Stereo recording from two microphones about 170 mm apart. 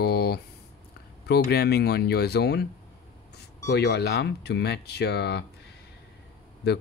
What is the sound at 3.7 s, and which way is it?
Speech, 75° left (ahead or behind).